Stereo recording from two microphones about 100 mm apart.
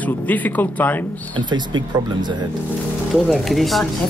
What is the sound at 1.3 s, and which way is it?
Speech, 50° right (ahead or behind).